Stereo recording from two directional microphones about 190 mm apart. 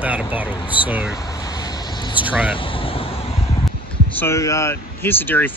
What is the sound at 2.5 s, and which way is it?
Vehicle, 30° left (ahead or behind).